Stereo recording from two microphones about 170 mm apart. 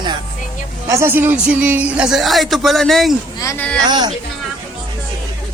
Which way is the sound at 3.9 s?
25° right (ahead or behind).